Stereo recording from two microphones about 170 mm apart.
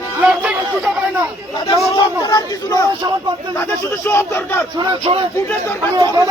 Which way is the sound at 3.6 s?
15° left (ahead or behind).